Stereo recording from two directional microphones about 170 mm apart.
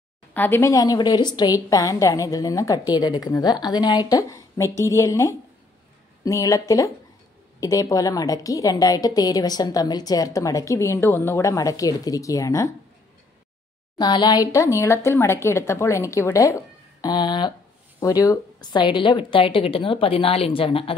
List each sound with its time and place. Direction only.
0.3 s a woman's voice: 10° left (ahead or behind)
13.9 s a woman's voice: 25° left (ahead or behind)